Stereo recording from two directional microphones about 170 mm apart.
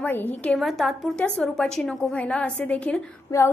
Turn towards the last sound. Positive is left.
turn(degrees=15)  # may be behind; listen again after turning